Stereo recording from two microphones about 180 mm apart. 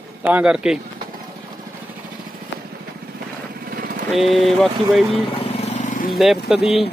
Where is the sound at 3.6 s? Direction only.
55° right (ahead or behind).